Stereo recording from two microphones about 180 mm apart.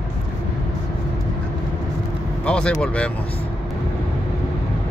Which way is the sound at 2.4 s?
5° left (ahead or behind).